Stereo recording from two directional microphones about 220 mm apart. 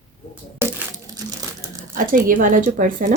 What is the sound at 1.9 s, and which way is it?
A woman's voice, 40° right (ahead or behind).